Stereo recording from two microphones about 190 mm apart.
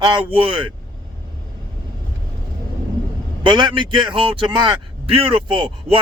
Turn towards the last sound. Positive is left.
turn(degrees=-25)  # may be behind; listen again after turning